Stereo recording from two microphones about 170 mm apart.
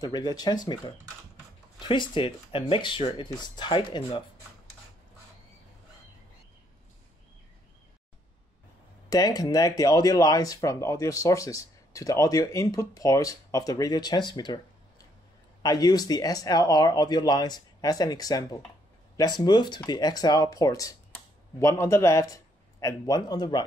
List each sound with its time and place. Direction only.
0.0 s speech: 25° left (ahead or behind)
9.1 s speech: 20° left (ahead or behind)
15.6 s a man's voice: 25° left (ahead or behind)